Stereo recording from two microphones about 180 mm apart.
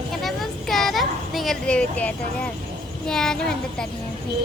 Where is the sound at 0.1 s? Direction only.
Centre (ahead or behind).